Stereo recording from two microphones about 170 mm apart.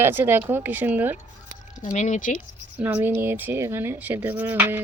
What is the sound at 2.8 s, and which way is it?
Speech, 10° right (ahead or behind).